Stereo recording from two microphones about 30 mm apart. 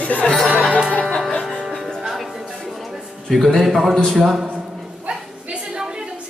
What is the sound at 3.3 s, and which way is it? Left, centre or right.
Speech, centre.